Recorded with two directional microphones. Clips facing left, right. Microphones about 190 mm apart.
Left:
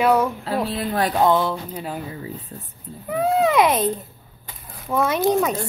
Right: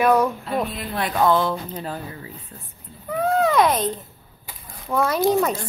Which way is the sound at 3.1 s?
15° left (ahead or behind).